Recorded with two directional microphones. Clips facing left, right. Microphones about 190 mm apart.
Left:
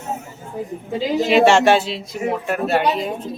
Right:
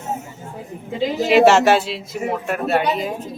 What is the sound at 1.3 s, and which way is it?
Speech, centre (ahead or behind).